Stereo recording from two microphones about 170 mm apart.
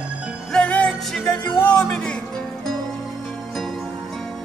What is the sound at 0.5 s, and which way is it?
Music, 5° left (ahead or behind).